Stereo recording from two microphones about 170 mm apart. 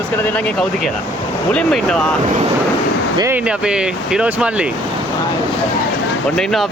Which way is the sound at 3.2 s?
15° right (ahead or behind).